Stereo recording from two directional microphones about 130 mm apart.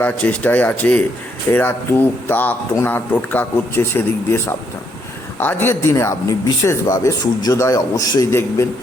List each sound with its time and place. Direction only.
0.0 s speech: 15° left (ahead or behind)